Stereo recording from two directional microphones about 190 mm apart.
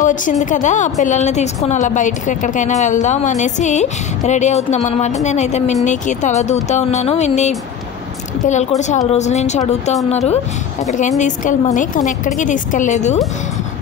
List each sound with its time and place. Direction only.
0.0 s a woman's voice: 40° left (ahead or behind)
10.9 s a woman's voice: 40° left (ahead or behind)